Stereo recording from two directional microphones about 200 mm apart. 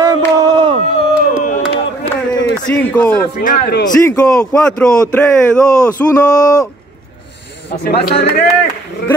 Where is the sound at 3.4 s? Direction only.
45° left (ahead or behind).